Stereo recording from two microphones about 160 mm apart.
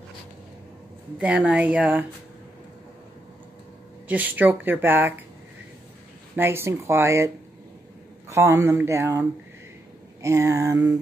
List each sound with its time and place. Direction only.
1.1 s speech: 5° right (ahead or behind)
4.1 s speech: 10° right (ahead or behind)
6.3 s speech: 15° right (ahead or behind)
8.3 s speech: 20° right (ahead or behind)
10.2 s a sound: 20° right (ahead or behind)